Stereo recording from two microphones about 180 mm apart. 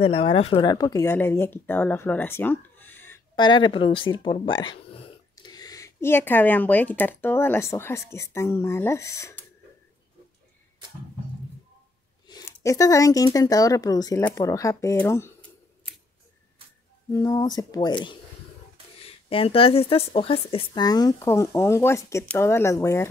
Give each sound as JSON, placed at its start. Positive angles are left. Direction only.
{"t": 0.0, "sound": "speech", "side_deg": 30}
{"t": 3.3, "sound": "speech", "side_deg": 25}
{"t": 12.3, "sound": "speech", "side_deg": 20}
{"t": 17.1, "sound": "speech", "side_deg": 20}